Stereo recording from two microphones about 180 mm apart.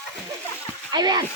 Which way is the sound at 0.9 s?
25° right (ahead or behind).